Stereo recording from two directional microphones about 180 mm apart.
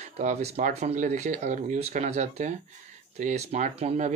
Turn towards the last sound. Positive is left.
turn(degrees=-40)  # may be behind; listen again after turning